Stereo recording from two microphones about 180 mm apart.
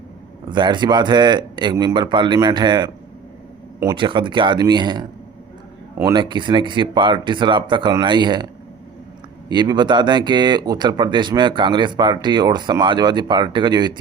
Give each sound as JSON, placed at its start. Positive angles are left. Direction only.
{"t": 0.5, "sound": "speech", "side_deg": -25}
{"t": 3.9, "sound": "speech", "side_deg": -25}
{"t": 6.1, "sound": "speech", "side_deg": -25}
{"t": 9.5, "sound": "speech", "side_deg": -25}